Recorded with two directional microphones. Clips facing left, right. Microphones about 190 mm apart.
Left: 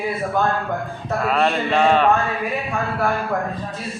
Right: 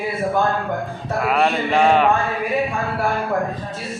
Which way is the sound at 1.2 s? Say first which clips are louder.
Right 1 dB; 10° right (ahead or behind).